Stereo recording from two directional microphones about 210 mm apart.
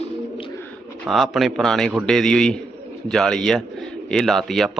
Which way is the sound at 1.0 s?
Centre (ahead or behind).